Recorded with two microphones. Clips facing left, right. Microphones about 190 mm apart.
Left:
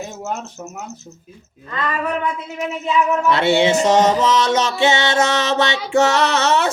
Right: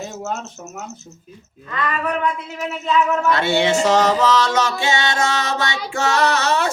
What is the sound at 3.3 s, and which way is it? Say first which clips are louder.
Music: left 4 dB; 20° left (ahead or behind).